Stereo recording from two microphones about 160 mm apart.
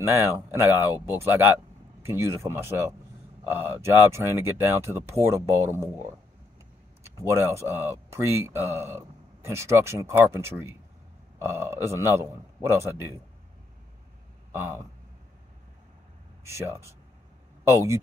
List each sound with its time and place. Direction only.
0.0 s speech: 15° right (ahead or behind)
7.2 s speech: 15° right (ahead or behind)
14.5 s speech: 15° right (ahead or behind)
16.4 s speech: 15° right (ahead or behind)